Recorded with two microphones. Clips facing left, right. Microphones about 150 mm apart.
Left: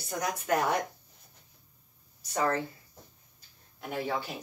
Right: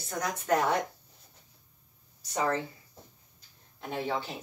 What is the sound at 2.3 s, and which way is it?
Speech, 15° right (ahead or behind).